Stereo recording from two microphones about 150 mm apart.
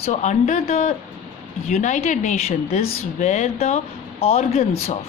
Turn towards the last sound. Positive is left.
turn(degrees=50)  # may be behind; listen again after turning